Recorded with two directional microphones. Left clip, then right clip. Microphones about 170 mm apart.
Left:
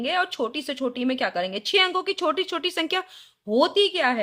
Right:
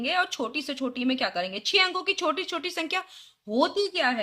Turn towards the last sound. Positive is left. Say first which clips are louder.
# left 4 dB
turn(degrees=30)  # may be behind; listen again after turning